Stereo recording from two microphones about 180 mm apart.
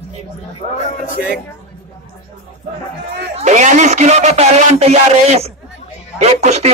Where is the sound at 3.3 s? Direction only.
40° right (ahead or behind).